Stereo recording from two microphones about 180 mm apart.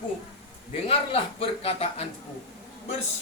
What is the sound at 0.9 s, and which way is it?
A man's voice, 30° left (ahead or behind).